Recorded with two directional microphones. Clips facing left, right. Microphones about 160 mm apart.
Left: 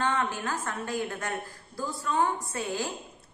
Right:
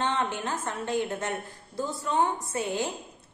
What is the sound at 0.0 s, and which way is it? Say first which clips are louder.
A woman's voice: even; 25° right (ahead or behind).